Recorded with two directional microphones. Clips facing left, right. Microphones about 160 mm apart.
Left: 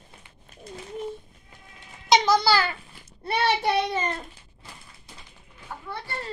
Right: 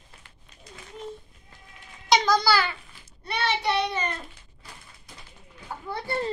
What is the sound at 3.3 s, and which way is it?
Child singing, 45° left (ahead or behind).